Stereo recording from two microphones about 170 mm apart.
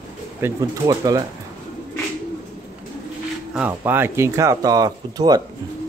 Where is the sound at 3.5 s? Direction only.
10° right (ahead or behind).